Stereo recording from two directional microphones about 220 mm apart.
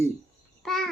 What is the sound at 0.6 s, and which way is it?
Frog, centre (ahead or behind).